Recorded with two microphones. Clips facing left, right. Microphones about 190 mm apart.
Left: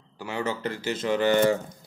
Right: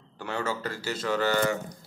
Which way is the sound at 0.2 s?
15° left (ahead or behind).